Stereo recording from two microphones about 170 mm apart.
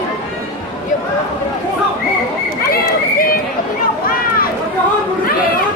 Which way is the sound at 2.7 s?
60° left (ahead or behind).